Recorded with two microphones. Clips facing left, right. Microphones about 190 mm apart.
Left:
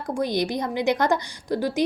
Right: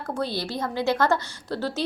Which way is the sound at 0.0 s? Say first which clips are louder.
Left 4 dB; 15° left (ahead or behind).